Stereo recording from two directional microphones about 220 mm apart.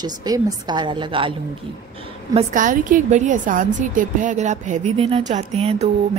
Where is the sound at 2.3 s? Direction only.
35° right (ahead or behind).